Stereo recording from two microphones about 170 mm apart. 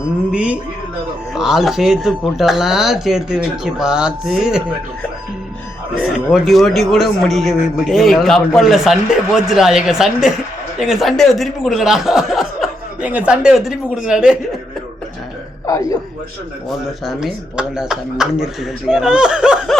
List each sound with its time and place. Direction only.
0.3 s music: 5° right (ahead or behind)
1.4 s speech: centre (ahead or behind)
5.9 s speech: 5° right (ahead or behind)
15.6 s a sound: 20° left (ahead or behind)
16.6 s speech: centre (ahead or behind)